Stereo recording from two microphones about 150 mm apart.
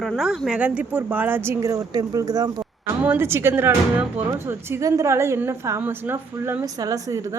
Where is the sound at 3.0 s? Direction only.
15° right (ahead or behind).